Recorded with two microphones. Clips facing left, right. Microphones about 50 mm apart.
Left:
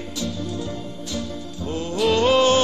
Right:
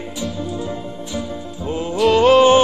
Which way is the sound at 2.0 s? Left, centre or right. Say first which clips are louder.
Right 6 dB; centre.